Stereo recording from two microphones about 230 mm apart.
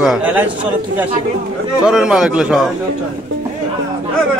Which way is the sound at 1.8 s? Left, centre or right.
Centre.